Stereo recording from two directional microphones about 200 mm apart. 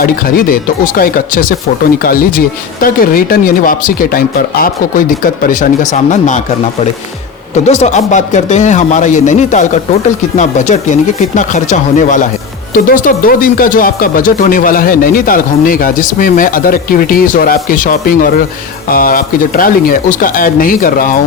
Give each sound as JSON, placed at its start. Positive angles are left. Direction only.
{"t": 0.0, "sound": "speech", "side_deg": 45}
{"t": 7.5, "sound": "speech", "side_deg": 35}